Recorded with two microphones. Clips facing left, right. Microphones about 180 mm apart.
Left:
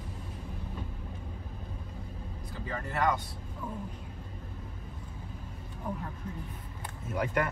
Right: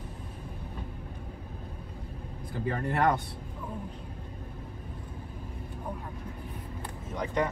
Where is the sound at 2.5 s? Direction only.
50° right (ahead or behind).